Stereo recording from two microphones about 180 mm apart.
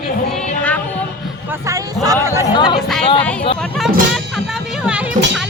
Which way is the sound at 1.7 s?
20° right (ahead or behind).